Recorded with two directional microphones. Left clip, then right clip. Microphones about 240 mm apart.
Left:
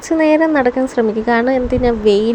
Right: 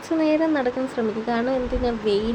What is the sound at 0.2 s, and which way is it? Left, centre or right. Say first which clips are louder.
Speech: left 9 dB; left.